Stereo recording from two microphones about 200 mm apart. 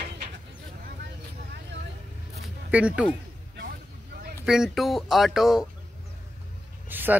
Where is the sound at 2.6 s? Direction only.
5° right (ahead or behind).